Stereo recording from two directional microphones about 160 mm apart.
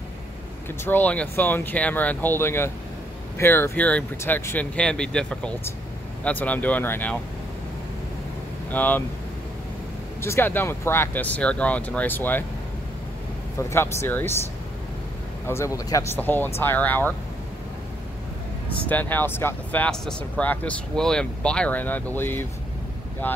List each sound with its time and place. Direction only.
0.8 s speech: 10° left (ahead or behind)
8.7 s speech: 10° left (ahead or behind)
10.2 s speech: 15° left (ahead or behind)
13.6 s speech: 15° left (ahead or behind)
15.4 s speech: 15° left (ahead or behind)
18.9 s speech: 10° left (ahead or behind)